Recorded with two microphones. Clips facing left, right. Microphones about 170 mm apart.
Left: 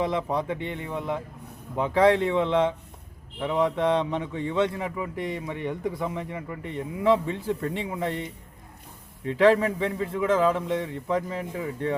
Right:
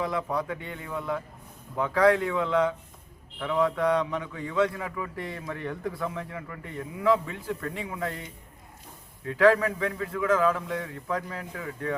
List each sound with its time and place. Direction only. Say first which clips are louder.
0.0 s a man's voice: left 3 dB; 25° left (ahead or behind)
9.2 s a man's voice: left 1 dB; 25° left (ahead or behind)